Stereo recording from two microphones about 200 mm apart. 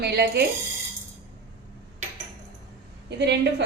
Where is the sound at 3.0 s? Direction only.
55° right (ahead or behind).